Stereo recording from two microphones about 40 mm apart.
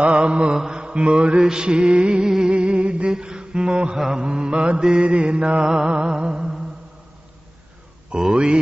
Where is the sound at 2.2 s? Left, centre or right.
Centre.